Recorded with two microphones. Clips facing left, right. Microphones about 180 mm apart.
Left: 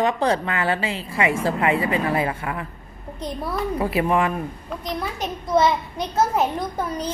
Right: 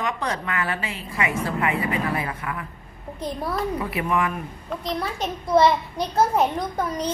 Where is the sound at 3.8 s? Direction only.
30° left (ahead or behind).